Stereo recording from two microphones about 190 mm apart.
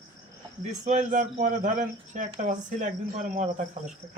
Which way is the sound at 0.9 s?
40° right (ahead or behind).